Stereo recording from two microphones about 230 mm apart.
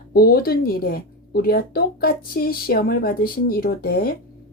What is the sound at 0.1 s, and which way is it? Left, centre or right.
Speech, left.